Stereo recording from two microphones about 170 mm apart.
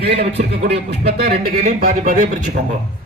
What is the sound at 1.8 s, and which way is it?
Speech, 55° right (ahead or behind).